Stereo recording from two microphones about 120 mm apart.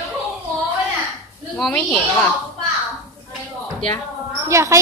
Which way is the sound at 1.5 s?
5° left (ahead or behind).